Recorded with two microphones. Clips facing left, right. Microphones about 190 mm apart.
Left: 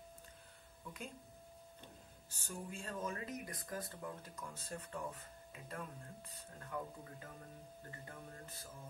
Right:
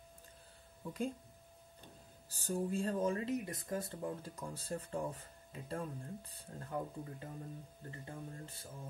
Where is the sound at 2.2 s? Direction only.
35° right (ahead or behind).